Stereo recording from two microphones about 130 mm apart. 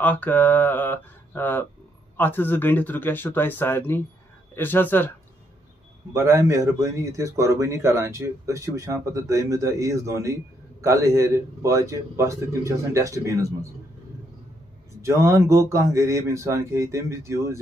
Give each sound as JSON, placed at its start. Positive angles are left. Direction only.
{"t": 0.0, "sound": "speech", "side_deg": 15}
{"t": 6.1, "sound": "a man's voice", "side_deg": -20}
{"t": 15.0, "sound": "a man's voice", "side_deg": -20}